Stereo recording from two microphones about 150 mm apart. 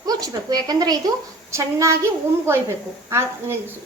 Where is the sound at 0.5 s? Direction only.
25° right (ahead or behind).